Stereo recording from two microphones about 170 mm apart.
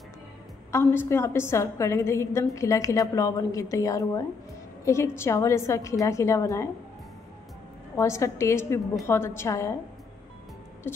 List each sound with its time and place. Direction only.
0.7 s a woman's voice: 15° left (ahead or behind)
7.9 s a woman's voice: 15° left (ahead or behind)